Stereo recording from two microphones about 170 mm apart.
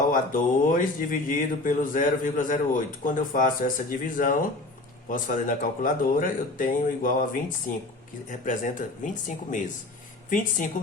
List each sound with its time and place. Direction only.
0.1 s speech: 50° left (ahead or behind)
8.3 s speech: 50° left (ahead or behind)